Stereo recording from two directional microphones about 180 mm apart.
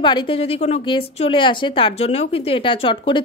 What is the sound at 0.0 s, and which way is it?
A woman's voice, 30° left (ahead or behind).